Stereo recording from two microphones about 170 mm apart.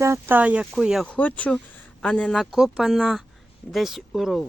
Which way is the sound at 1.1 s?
10° left (ahead or behind).